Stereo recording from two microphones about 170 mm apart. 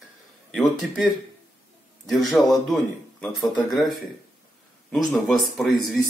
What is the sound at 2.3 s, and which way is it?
Speech, centre (ahead or behind).